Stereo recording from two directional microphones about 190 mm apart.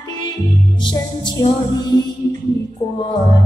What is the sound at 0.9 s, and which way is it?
Music, 25° left (ahead or behind).